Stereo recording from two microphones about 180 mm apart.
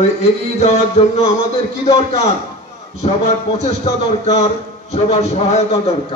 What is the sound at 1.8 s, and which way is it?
Speech, 35° left (ahead or behind).